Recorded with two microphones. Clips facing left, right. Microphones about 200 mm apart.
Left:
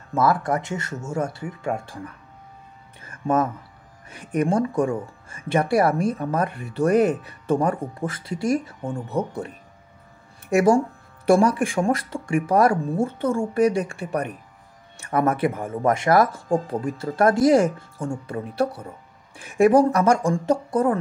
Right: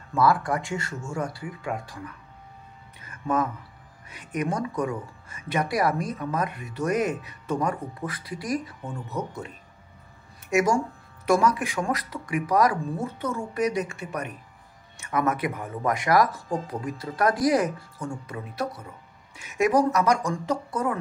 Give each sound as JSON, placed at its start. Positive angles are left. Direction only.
{"t": 0.1, "sound": "speech", "side_deg": 25}
{"t": 3.1, "sound": "a sound", "side_deg": 45}
{"t": 4.3, "sound": "speech", "side_deg": 30}
{"t": 10.5, "sound": "speech", "side_deg": 30}
{"t": 11.5, "sound": "speech", "side_deg": 50}
{"t": 11.8, "sound": "speech", "side_deg": 25}
{"t": 15.5, "sound": "speech", "side_deg": 45}
{"t": 15.8, "sound": "speech", "side_deg": 25}
{"t": 19.5, "sound": "speech", "side_deg": 30}